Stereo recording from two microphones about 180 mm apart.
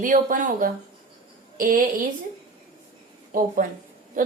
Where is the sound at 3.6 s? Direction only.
50° right (ahead or behind).